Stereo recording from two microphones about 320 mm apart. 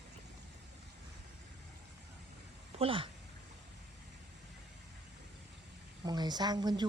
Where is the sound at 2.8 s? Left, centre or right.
Centre.